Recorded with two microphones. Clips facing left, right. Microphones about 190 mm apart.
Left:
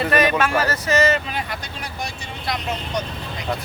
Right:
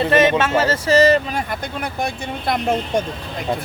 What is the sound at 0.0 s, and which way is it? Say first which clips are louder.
Speech: right 3 dB; 25° right (ahead or behind).